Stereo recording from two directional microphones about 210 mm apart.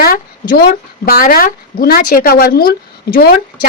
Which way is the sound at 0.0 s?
45° left (ahead or behind).